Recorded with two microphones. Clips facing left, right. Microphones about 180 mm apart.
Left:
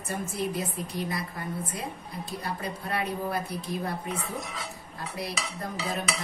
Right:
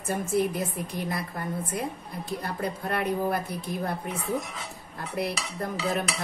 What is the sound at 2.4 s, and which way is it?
Speech, 55° right (ahead or behind).